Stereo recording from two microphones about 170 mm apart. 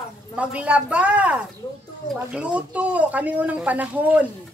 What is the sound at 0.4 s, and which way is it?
Speech, 5° right (ahead or behind).